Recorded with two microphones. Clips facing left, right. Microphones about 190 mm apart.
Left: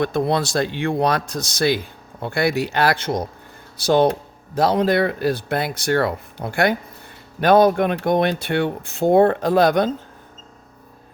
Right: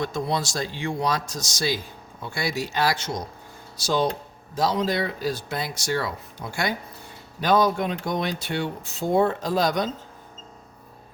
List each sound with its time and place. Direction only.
0.0 s speech: 60° left (ahead or behind)